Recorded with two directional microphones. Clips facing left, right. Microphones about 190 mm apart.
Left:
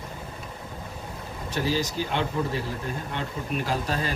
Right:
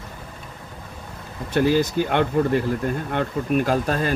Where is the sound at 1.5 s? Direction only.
55° right (ahead or behind).